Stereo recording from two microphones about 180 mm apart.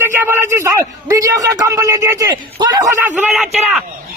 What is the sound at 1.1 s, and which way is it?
Speech, 20° right (ahead or behind).